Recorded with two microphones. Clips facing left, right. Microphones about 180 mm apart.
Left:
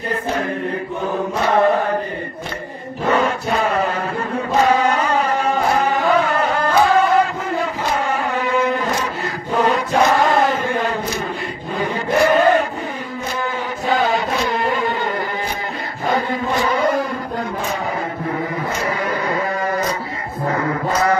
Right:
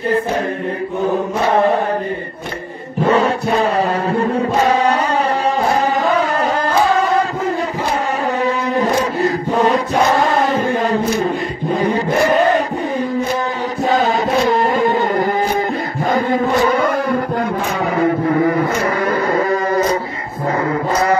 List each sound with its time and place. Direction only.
3.1 s chant: 35° right (ahead or behind)
6.0 s music: 40° right (ahead or behind)
8.4 s chant: 35° right (ahead or behind)
13.8 s chant: 40° right (ahead or behind)